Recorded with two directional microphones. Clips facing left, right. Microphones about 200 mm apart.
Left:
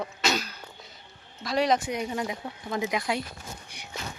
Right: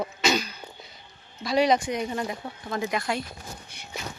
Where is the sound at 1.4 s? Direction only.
Centre (ahead or behind).